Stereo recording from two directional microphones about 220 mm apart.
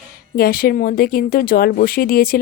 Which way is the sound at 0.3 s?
40° left (ahead or behind).